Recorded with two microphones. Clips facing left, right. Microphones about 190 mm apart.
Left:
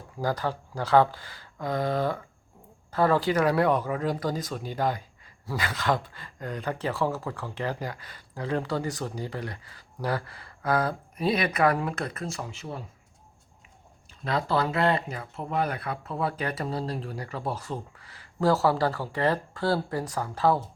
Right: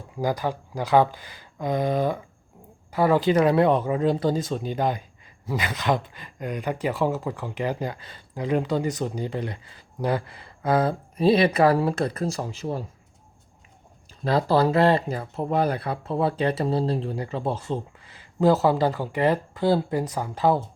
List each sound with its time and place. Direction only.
0.2 s speech: 15° right (ahead or behind); by 12.8 s 35° right (ahead or behind)
14.3 s speech: 35° right (ahead or behind); by 20.6 s 20° right (ahead or behind)